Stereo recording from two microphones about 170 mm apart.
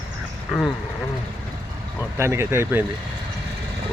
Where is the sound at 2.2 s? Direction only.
15° right (ahead or behind).